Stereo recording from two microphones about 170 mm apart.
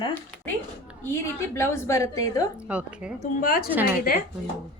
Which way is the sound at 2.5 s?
5° right (ahead or behind).